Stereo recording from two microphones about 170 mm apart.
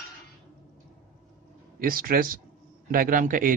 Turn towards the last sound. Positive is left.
turn(degrees=-55)  # may be behind; listen again after turning